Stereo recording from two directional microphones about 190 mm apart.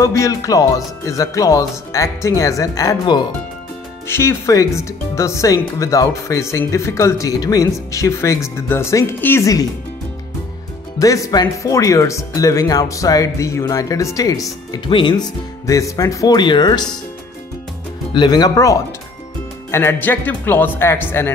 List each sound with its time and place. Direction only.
0.0 s speech: 15° left (ahead or behind)
11.0 s speech: 20° left (ahead or behind)
18.1 s speech: 20° left (ahead or behind)